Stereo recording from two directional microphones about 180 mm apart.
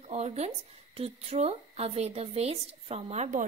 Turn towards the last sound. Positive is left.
turn(degrees=-40)  # may be behind; listen again after turning